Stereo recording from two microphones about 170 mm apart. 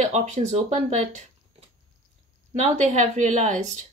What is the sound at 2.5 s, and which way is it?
Speech, 45° right (ahead or behind).